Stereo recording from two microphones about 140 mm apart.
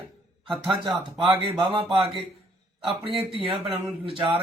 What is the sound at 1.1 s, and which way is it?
Speech, 40° right (ahead or behind).